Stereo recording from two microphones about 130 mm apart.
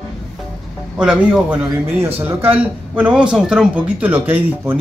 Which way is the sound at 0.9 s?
5° right (ahead or behind).